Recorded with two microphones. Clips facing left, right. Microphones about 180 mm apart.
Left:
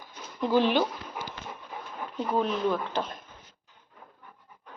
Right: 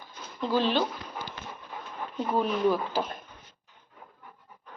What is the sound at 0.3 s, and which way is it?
Speech, 15° left (ahead or behind).